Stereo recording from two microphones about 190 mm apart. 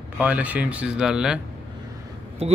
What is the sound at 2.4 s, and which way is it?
Speech, 35° right (ahead or behind).